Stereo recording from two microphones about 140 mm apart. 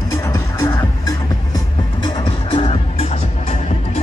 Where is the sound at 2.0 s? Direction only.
35° left (ahead or behind).